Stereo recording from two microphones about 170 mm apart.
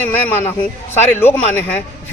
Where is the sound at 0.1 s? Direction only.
10° left (ahead or behind).